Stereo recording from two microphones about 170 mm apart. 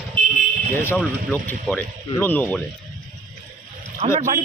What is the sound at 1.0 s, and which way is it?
Speech, 5° left (ahead or behind).